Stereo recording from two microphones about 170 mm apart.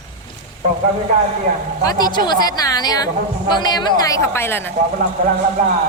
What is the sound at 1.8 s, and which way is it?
Speech, 25° left (ahead or behind).